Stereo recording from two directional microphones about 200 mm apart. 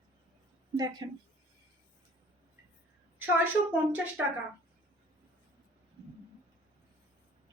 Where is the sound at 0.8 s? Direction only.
20° right (ahead or behind).